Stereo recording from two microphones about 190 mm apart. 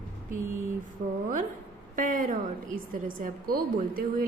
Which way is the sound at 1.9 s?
45° right (ahead or behind).